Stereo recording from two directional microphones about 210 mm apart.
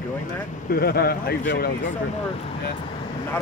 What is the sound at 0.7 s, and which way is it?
Speech, 50° left (ahead or behind).